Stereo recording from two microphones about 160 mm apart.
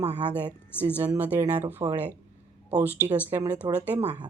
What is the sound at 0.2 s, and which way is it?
Speech, 10° right (ahead or behind).